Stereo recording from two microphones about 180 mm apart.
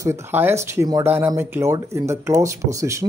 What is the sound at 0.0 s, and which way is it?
Speech, 15° right (ahead or behind).